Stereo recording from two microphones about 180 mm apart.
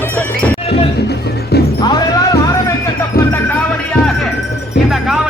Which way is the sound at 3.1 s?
55° left (ahead or behind).